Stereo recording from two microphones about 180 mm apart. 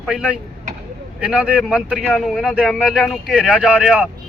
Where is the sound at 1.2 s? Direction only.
5° right (ahead or behind).